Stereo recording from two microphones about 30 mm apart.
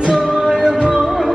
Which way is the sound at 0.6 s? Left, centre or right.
Right.